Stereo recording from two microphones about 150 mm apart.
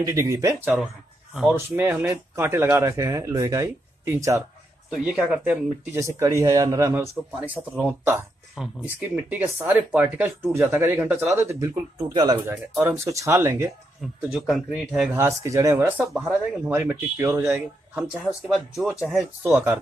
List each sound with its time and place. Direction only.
0.0 s speech: 20° right (ahead or behind)
1.3 s speech: 5° right (ahead or behind)
1.8 s speech: 15° right (ahead or behind)
4.9 s speech: 5° right (ahead or behind)
12.0 s speech: 30° right (ahead or behind)
12.4 s speech: 15° right (ahead or behind)
14.3 s speech: centre (ahead or behind)
15.1 s speech: 20° right (ahead or behind)
16.1 s speech: 5° right (ahead or behind)
17.9 s speech: 5° right (ahead or behind)
19.5 s speech: 15° right (ahead or behind)